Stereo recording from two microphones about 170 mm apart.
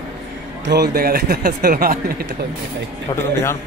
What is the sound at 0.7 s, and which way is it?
Speech, 65° right (ahead or behind).